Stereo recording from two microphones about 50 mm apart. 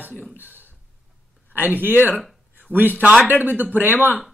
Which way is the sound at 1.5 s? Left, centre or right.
Right.